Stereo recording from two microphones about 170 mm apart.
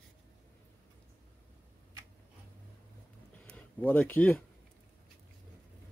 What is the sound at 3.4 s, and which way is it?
Speech, 10° left (ahead or behind).